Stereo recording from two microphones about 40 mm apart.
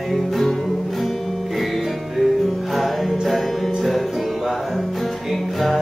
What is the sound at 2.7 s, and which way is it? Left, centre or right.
Music, centre.